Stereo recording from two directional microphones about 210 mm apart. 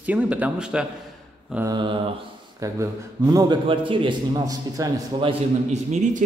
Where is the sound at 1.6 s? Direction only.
20° right (ahead or behind).